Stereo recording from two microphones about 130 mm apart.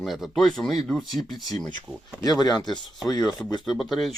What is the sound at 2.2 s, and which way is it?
Speech, 30° left (ahead or behind).